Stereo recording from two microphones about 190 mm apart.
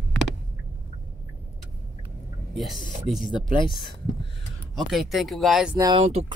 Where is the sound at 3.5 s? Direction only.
25° left (ahead or behind).